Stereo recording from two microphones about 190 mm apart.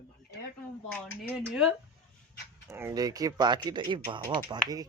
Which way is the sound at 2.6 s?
15° right (ahead or behind).